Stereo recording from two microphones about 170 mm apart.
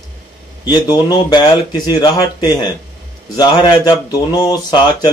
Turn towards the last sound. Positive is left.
turn(degrees=25)  # may be behind; listen again after turning